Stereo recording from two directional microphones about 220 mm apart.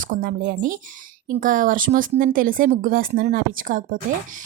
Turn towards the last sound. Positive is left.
turn(degrees=-35)  # may be behind; listen again after turning